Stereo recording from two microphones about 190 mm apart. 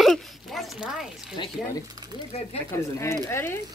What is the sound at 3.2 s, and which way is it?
Speech, 15° left (ahead or behind).